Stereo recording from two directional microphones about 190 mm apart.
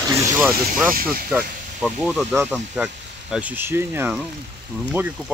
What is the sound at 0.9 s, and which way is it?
Speech, 50° right (ahead or behind).